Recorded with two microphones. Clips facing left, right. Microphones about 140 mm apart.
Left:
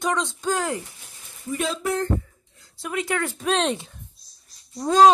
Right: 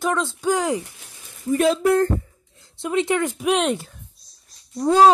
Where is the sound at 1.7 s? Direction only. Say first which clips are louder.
Right 9 dB; 60° right (ahead or behind).